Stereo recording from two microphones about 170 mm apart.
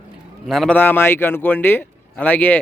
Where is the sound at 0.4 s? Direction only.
Centre (ahead or behind).